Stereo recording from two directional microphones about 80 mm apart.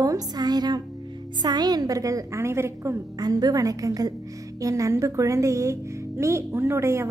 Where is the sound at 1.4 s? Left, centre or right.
Right.